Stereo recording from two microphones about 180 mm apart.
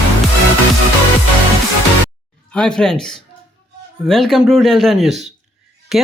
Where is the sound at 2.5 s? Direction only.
5° left (ahead or behind).